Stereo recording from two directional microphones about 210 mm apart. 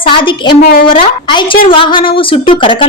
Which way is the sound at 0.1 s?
25° left (ahead or behind).